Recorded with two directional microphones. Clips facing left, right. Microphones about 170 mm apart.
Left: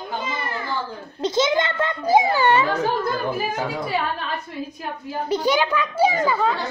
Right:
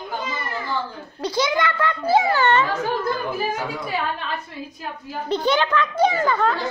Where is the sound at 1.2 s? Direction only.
20° left (ahead or behind).